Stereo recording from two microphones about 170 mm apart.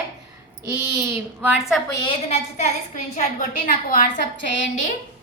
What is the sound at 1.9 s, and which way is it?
Speech, 25° left (ahead or behind).